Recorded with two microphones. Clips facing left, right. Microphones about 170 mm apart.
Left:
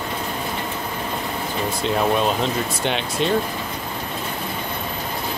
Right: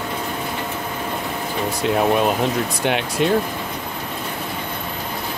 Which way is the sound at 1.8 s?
10° right (ahead or behind).